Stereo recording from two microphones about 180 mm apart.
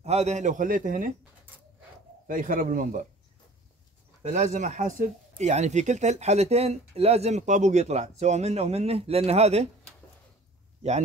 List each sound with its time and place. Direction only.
0.0 s a man's voice: 35° right (ahead or behind)
2.2 s a man's voice: 50° right (ahead or behind)
4.2 s speech: 40° right (ahead or behind)